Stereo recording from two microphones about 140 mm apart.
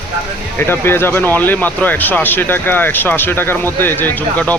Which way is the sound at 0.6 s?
15° left (ahead or behind).